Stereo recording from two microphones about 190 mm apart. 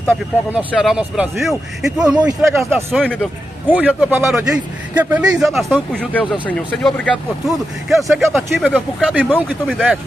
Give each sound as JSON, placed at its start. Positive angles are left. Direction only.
{"t": 0.0, "sound": "a man's voice", "side_deg": -10}
{"t": 2.9, "sound": "a man's voice", "side_deg": 0}